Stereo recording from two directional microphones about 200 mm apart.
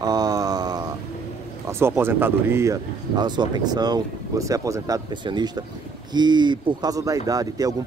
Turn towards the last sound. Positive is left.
turn(degrees=-20)  # may be behind; listen again after turning